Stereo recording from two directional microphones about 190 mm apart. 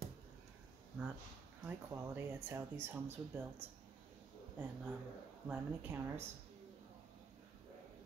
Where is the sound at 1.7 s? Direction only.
10° right (ahead or behind).